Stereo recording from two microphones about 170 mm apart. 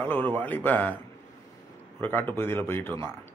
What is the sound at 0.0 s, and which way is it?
Speech, 10° left (ahead or behind).